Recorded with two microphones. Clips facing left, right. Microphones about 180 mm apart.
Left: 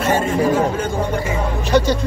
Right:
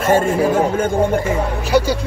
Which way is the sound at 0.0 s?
50° right (ahead or behind).